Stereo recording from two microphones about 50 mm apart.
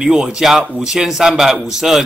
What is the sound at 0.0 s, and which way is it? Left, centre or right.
A man's voice, centre.